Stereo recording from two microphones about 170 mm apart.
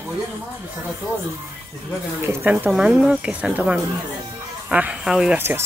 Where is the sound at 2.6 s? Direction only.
5° right (ahead or behind).